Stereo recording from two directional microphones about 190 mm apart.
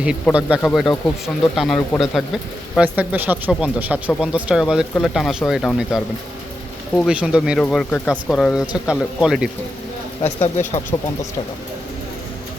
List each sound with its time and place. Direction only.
0.0 s speech: 5° right (ahead or behind)
7.1 s speech: 5° right (ahead or behind)
10.2 s speech: 35° left (ahead or behind)
10.9 s speech: 20° left (ahead or behind)